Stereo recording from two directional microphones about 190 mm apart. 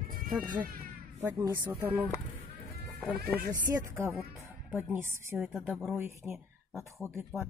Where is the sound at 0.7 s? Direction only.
50° right (ahead or behind).